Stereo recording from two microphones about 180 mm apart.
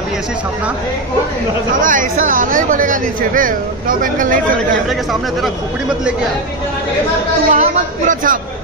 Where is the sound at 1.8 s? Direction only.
45° right (ahead or behind).